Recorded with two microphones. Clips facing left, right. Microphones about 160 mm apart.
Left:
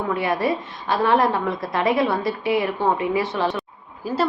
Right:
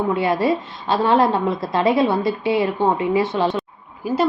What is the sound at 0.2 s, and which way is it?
A woman's voice, 25° right (ahead or behind).